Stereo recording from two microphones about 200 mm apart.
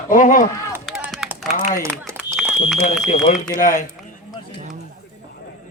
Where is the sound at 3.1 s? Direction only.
35° left (ahead or behind).